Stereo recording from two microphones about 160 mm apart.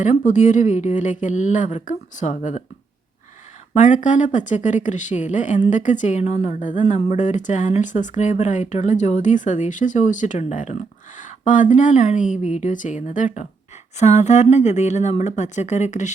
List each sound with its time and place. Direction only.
0.3 s speech: 50° left (ahead or behind)
3.8 s speech: 50° left (ahead or behind)